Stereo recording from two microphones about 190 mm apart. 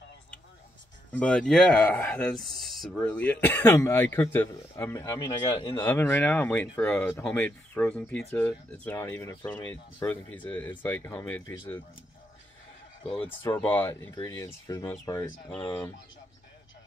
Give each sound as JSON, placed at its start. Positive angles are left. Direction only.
{"t": 1.1, "sound": "speech", "side_deg": 5}
{"t": 5.9, "sound": "speech", "side_deg": 10}
{"t": 13.4, "sound": "speech", "side_deg": 10}